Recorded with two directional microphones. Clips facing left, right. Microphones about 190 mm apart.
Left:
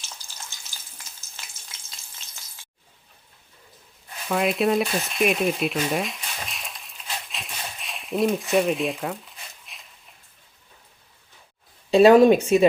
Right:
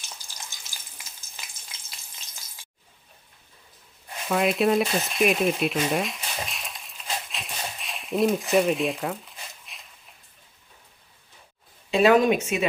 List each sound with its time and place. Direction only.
4.3 s frying: centre (ahead or behind)
11.9 s speech: 30° left (ahead or behind)